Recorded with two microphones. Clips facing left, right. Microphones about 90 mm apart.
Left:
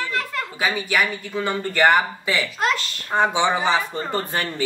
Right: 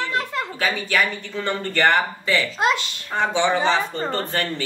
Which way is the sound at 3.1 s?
15° left (ahead or behind).